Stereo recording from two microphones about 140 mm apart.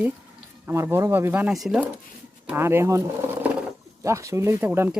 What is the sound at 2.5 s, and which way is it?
Speech, 15° right (ahead or behind).